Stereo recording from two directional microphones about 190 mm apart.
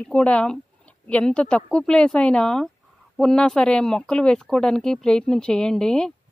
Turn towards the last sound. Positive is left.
turn(degrees=5)  # may be behind; listen again after turning